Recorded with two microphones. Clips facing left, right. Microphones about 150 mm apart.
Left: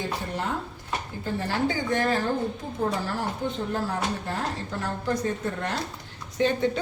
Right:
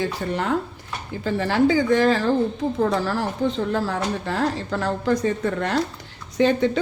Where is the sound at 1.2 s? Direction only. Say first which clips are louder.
Right 8 dB; 90° right.